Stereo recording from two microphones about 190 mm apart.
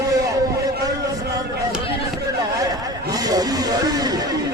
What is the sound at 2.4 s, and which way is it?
Speech, 20° right (ahead or behind).